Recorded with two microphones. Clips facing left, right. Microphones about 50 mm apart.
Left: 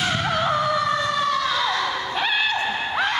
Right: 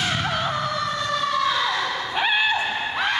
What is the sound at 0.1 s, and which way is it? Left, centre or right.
Vehicle, centre.